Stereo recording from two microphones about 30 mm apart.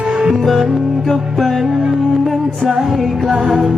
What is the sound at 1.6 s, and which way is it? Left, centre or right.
Music, right.